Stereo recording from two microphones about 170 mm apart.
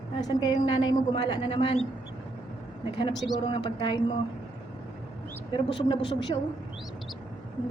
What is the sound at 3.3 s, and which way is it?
Speech, 30° left (ahead or behind).